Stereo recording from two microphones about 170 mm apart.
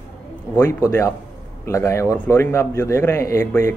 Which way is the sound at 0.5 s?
15° left (ahead or behind).